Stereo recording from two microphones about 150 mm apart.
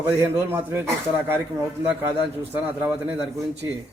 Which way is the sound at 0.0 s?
15° right (ahead or behind).